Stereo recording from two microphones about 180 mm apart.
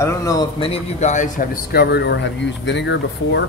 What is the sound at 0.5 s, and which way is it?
A man's voice, 30° left (ahead or behind).